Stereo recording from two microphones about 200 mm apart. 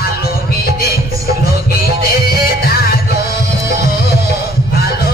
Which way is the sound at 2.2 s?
50° left (ahead or behind).